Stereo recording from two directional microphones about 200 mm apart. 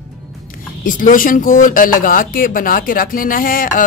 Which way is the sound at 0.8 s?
40° left (ahead or behind).